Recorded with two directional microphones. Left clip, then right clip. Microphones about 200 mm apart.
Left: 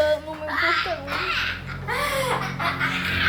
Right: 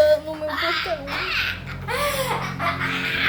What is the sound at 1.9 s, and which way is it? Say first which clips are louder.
Speech: right 1 dB; 30° right (ahead or behind).